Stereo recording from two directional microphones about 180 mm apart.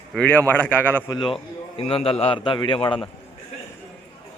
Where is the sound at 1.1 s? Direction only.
30° left (ahead or behind).